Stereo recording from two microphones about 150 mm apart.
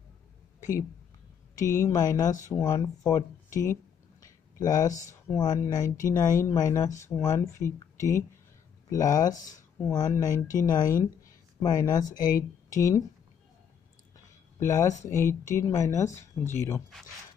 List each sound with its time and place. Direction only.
1.5 s speech: 20° left (ahead or behind)
4.2 s a sound: 25° left (ahead or behind)
5.3 s speech: 25° left (ahead or behind)
14.6 s speech: 20° left (ahead or behind)